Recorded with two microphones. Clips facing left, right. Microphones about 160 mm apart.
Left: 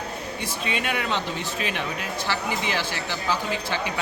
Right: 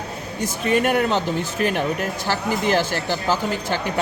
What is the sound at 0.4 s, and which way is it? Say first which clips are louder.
Speech: right 10 dB; 45° right (ahead or behind).